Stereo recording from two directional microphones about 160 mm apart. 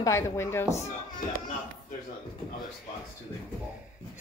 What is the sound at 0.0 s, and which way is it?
Speech, 15° left (ahead or behind).